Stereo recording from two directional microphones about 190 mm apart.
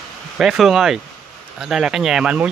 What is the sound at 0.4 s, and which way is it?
Speech, centre (ahead or behind).